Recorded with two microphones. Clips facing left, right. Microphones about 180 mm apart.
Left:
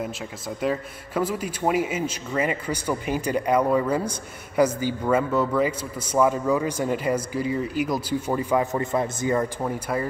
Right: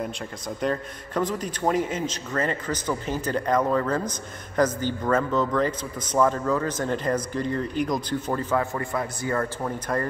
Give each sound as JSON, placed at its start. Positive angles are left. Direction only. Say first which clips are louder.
{"t": 0.6, "sound": "a man's voice", "louder": "left 1 dB", "side_deg": 5}